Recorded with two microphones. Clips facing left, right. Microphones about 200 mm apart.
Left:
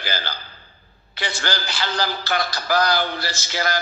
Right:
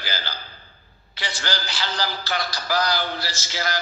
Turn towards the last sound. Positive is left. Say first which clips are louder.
# left 4 dB
turn(degrees=55)  # may be behind; listen again after turning